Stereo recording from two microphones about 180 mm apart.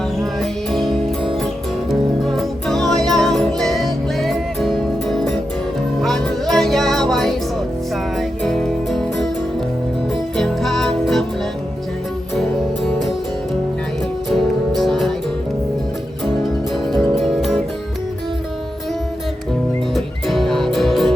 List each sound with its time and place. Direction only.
0.3 s music: centre (ahead or behind)
10.3 s music: centre (ahead or behind)
12.4 s music: centre (ahead or behind)
14.3 s music: centre (ahead or behind)
16.9 s music: centre (ahead or behind)
19.9 s music: centre (ahead or behind)